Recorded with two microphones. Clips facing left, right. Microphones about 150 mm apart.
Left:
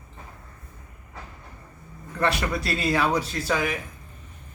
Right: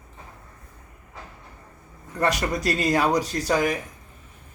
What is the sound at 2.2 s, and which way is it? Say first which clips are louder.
Speech: right 2 dB; 40° right (ahead or behind).